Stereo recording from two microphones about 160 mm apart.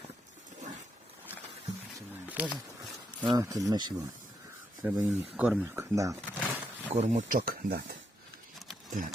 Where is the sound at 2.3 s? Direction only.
10° right (ahead or behind).